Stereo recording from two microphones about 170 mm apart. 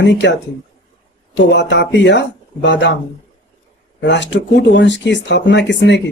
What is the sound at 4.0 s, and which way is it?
Speech, 90° left.